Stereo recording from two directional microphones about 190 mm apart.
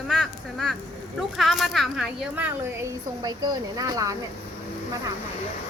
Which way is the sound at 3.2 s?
20° right (ahead or behind).